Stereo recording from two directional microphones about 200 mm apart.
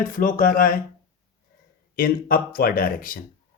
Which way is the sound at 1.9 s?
45° left (ahead or behind).